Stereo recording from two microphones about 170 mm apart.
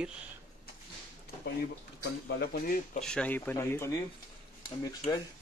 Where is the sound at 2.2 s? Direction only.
70° left (ahead or behind).